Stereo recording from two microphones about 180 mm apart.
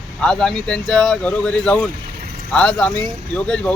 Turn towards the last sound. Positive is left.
turn(degrees=5)  # may be behind; listen again after turning